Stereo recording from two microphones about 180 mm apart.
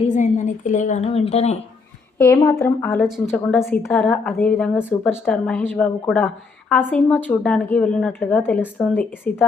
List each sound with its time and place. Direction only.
0.1 s a woman's voice: 45° left (ahead or behind)
2.1 s speech: 15° left (ahead or behind)